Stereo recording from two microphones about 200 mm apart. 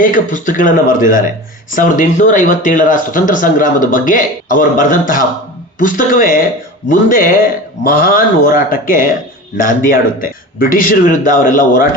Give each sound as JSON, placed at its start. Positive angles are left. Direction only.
{"t": 0.0, "sound": "a man's voice", "side_deg": 40}